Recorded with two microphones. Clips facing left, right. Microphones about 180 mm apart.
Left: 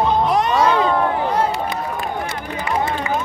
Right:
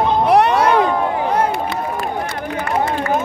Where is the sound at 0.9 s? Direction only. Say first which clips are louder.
Even; 10° right (ahead or behind).